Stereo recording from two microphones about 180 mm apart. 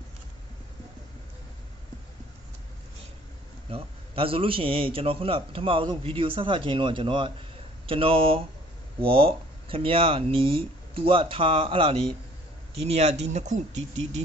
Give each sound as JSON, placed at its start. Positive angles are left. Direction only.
{"t": 3.7, "sound": "a man's voice", "side_deg": -30}